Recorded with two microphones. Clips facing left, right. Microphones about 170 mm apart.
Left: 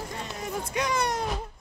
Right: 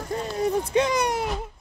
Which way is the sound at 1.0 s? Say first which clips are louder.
Right 3 dB; 10° right (ahead or behind).